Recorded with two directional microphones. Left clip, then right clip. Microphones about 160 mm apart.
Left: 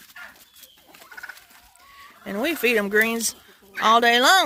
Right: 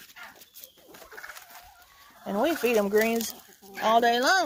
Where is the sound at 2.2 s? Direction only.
60° left (ahead or behind); by 3.2 s 90° left.